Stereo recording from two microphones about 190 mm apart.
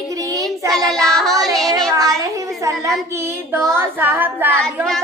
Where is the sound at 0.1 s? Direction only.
15° right (ahead or behind).